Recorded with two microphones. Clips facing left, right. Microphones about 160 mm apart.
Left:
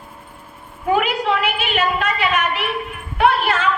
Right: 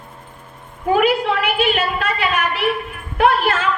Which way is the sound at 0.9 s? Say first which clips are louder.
Right 3 dB; 35° right (ahead or behind).